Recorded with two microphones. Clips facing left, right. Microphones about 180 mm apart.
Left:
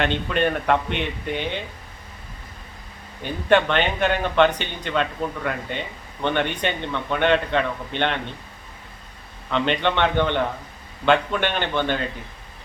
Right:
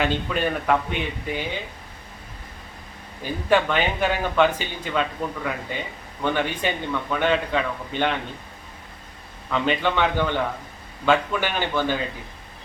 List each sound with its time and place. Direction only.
0.0 s speech: 5° right (ahead or behind)
3.5 s speech: 5° right (ahead or behind)
9.5 s speech: 5° right (ahead or behind)